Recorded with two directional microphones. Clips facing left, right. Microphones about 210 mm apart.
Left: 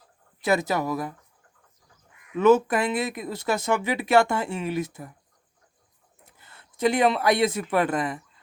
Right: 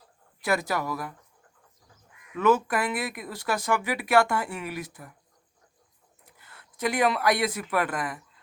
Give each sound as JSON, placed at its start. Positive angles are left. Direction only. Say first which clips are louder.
{"t": 0.4, "sound": "speech", "louder": "left 4 dB", "side_deg": 25}
{"t": 2.3, "sound": "speech", "louder": "left 5 dB", "side_deg": 25}
{"t": 6.3, "sound": "speech", "louder": "right 1 dB", "side_deg": 25}